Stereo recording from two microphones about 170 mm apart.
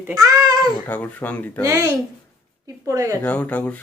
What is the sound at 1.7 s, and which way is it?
Speech, 20° right (ahead or behind).